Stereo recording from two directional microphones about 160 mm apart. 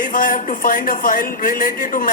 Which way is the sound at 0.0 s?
60° left (ahead or behind).